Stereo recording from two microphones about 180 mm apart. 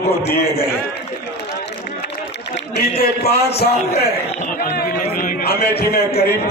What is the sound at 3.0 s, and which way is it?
Speech, 60° left (ahead or behind).